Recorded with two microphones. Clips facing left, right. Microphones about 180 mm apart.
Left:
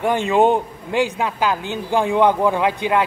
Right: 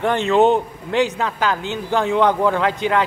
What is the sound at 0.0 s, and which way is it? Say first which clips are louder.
A man's voice: right 1 dB; 10° left (ahead or behind).